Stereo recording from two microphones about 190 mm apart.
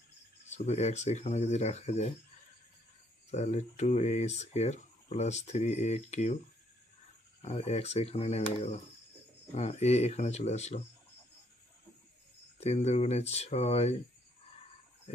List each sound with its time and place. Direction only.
0.5 s speech: 35° left (ahead or behind)
3.3 s speech: 35° left (ahead or behind)
7.4 s speech: 35° left (ahead or behind)
12.5 s speech: 35° left (ahead or behind)